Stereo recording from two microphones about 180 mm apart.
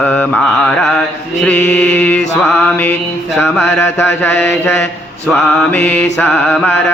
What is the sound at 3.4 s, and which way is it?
Mantra, centre (ahead or behind).